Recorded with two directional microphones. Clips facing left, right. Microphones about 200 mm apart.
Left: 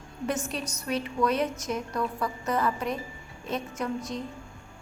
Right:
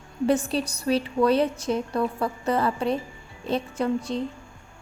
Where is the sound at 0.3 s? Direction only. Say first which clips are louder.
Right 8 dB; 30° right (ahead or behind).